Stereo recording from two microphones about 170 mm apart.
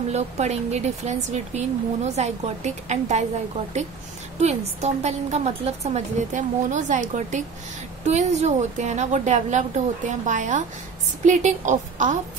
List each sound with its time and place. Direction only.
0.1 s speech: 40° right (ahead or behind)
4.4 s a woman's voice: 40° right (ahead or behind)